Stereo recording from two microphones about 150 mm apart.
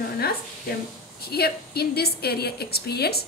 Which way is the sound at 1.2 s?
90° left.